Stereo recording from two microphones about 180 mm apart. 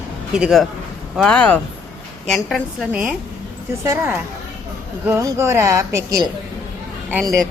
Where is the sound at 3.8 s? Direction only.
15° right (ahead or behind).